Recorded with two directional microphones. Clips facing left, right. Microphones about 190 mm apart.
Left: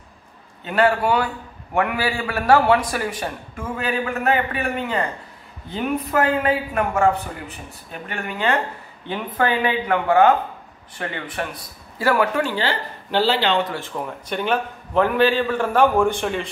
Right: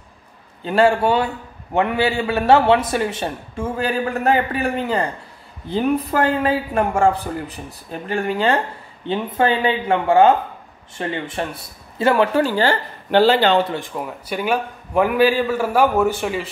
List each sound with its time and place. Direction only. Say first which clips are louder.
0.7 s a man's voice: right 3 dB; 30° right (ahead or behind)
12.4 s speech: right 5 dB; 45° right (ahead or behind)
13.7 s a man's voice: right 1 dB; 10° right (ahead or behind)